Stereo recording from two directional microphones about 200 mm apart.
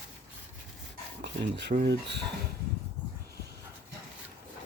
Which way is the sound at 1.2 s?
60° right (ahead or behind).